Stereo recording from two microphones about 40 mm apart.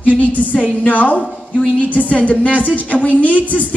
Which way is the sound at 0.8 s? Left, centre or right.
Left.